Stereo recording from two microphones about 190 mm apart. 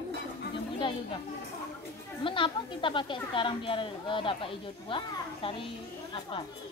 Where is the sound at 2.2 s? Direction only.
25° left (ahead or behind).